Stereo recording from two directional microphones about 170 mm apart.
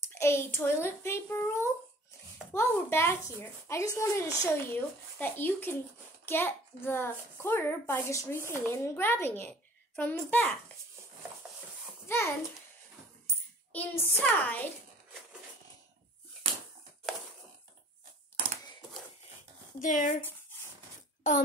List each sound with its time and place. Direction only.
0.1 s a child's voice: 15° left (ahead or behind)
12.1 s a child's voice: 15° left (ahead or behind)
13.7 s a child's voice: 10° left (ahead or behind)
19.8 s speech: 50° left (ahead or behind)